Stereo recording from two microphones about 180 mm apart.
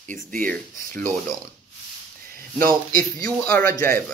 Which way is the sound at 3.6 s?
15° left (ahead or behind).